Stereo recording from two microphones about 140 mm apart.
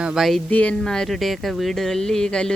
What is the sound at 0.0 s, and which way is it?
Speech, 5° right (ahead or behind).